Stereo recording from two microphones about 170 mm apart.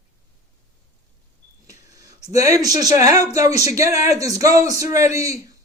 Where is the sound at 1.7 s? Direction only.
20° right (ahead or behind).